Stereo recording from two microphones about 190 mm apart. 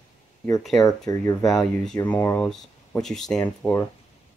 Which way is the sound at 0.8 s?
20° left (ahead or behind).